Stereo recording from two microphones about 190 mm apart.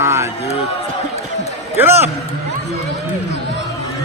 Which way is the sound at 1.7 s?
10° right (ahead or behind).